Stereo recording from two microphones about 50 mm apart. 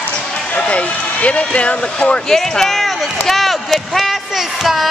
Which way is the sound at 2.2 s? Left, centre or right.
Centre.